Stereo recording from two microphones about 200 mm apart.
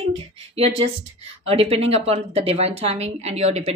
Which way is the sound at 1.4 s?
30° right (ahead or behind).